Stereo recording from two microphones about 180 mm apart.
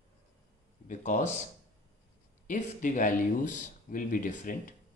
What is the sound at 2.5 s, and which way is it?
Speech, 45° left (ahead or behind).